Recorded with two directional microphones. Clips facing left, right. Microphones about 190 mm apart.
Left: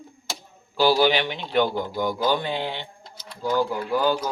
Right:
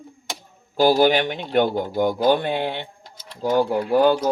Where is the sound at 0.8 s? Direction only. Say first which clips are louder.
Right 3 dB; 45° right (ahead or behind).